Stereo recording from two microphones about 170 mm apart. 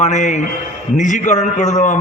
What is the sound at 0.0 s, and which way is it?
A man's voice, 45° left (ahead or behind).